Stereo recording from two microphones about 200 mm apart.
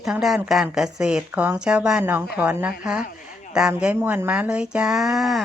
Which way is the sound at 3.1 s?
40° left (ahead or behind).